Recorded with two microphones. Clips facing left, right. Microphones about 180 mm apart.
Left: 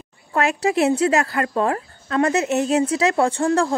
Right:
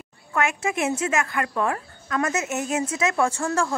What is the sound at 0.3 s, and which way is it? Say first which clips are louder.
Speech: left 5 dB; 35° left (ahead or behind).